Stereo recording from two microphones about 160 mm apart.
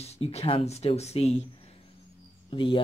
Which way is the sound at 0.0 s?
40° left (ahead or behind).